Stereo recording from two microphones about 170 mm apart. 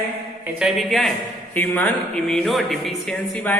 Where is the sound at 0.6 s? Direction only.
Centre (ahead or behind).